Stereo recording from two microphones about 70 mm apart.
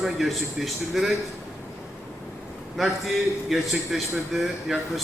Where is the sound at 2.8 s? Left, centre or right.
Centre.